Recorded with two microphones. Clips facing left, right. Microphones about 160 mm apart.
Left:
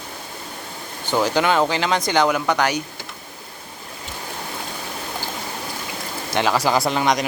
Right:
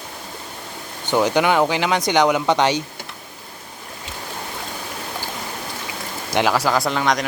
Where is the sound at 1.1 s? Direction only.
15° right (ahead or behind).